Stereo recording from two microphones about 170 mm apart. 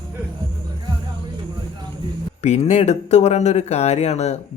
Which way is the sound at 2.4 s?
40° left (ahead or behind).